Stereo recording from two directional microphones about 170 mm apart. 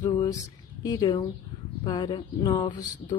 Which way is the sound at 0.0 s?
25° left (ahead or behind).